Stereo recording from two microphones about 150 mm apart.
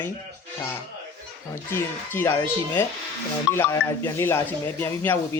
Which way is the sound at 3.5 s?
15° left (ahead or behind).